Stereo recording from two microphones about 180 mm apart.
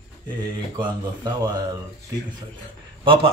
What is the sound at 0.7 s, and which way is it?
Speech, 20° right (ahead or behind).